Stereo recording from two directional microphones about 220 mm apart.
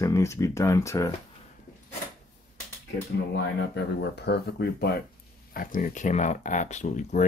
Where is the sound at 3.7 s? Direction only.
50° left (ahead or behind).